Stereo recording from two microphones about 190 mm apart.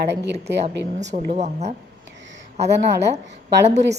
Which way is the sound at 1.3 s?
35° right (ahead or behind).